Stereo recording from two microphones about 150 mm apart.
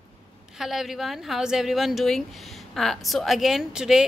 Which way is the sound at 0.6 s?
Centre (ahead or behind).